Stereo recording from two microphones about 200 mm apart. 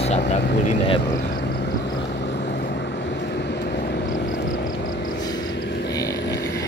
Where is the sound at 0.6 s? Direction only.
25° left (ahead or behind).